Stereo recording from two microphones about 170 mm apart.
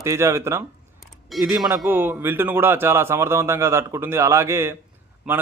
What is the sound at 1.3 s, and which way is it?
Speech, centre (ahead or behind).